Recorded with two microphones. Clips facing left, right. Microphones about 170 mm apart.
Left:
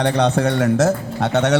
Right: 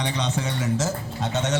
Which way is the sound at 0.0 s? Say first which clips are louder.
Left 10 dB; 60° left (ahead or behind).